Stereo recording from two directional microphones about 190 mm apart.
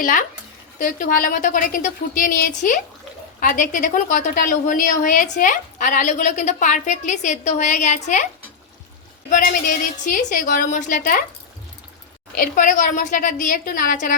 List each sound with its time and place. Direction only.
0.0 s a woman's voice: 45° left (ahead or behind)
9.3 s a woman's voice: 45° left (ahead or behind)
12.3 s a woman's voice: 45° left (ahead or behind)